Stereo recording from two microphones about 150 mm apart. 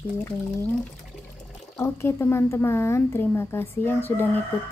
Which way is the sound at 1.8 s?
15° left (ahead or behind).